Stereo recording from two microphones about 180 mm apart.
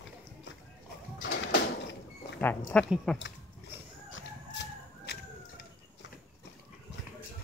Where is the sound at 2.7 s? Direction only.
5° left (ahead or behind).